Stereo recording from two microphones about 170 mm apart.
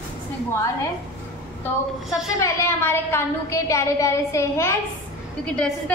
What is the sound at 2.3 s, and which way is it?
A woman's voice, 15° left (ahead or behind).